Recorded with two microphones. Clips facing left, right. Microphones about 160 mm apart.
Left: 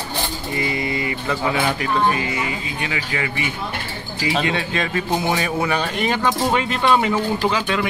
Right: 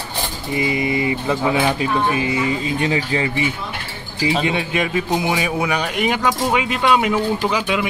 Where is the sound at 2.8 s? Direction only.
30° right (ahead or behind).